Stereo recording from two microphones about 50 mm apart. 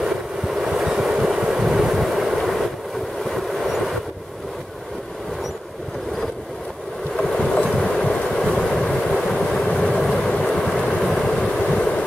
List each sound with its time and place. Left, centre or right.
0.0 s train: centre
7.2 s train: centre
10.3 s vehicle: left
11.0 s vehicle: centre